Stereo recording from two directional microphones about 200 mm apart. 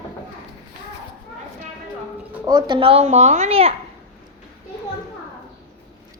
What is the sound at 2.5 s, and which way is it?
A child's voice, 20° right (ahead or behind).